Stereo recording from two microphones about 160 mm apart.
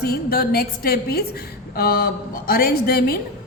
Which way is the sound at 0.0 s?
75° left (ahead or behind).